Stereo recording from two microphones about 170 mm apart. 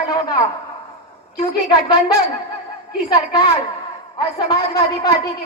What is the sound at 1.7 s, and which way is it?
A woman's voice, 25° left (ahead or behind).